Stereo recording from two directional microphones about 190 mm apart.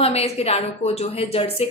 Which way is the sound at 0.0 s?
30° left (ahead or behind).